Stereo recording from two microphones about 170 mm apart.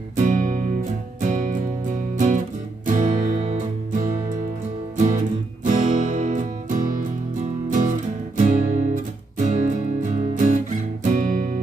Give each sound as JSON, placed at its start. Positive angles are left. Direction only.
{"t": 0.1, "sound": "music", "side_deg": -50}